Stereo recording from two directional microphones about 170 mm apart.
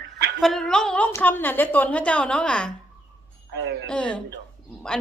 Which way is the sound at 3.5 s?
90° right.